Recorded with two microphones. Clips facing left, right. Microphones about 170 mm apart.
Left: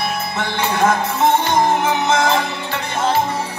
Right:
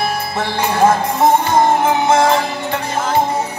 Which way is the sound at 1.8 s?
30° right (ahead or behind).